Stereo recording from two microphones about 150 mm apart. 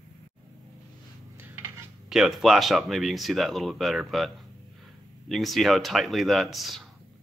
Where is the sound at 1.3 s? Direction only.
15° right (ahead or behind).